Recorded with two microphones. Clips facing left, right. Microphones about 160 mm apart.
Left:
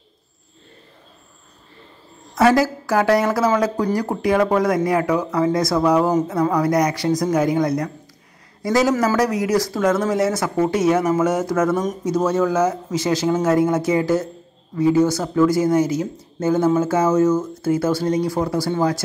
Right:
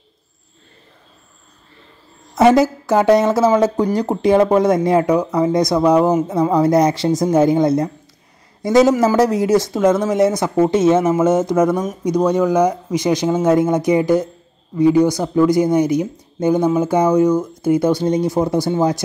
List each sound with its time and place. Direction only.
2.3 s speech: 20° right (ahead or behind)